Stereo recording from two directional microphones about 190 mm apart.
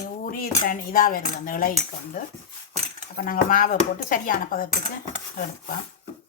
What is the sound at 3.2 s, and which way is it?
Speech, 45° left (ahead or behind).